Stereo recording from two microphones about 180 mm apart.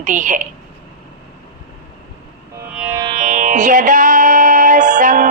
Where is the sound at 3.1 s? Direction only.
45° right (ahead or behind).